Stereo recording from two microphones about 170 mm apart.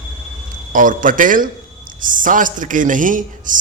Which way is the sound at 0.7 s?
50° right (ahead or behind).